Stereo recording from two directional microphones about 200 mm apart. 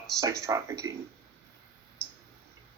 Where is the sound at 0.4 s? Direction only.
15° right (ahead or behind).